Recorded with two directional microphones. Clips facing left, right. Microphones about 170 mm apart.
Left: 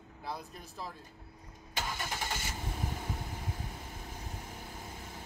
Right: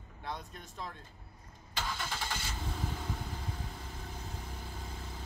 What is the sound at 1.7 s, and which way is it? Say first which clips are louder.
Vehicle: left 1 dB; 15° left (ahead or behind).